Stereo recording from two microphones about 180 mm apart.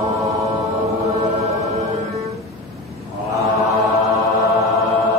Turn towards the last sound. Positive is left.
turn(degrees=-20)  # may be behind; listen again after turning